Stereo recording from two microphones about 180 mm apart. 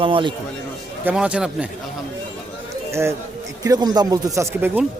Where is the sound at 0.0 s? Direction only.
25° right (ahead or behind).